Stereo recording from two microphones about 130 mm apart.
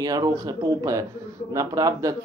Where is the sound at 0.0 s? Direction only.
30° right (ahead or behind).